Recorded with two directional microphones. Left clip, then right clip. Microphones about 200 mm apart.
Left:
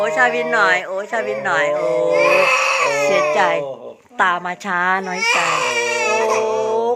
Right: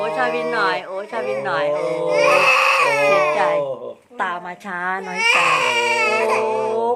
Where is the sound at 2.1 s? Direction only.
15° right (ahead or behind).